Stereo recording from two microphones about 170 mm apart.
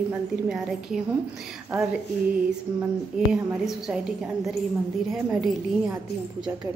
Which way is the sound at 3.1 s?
5° right (ahead or behind).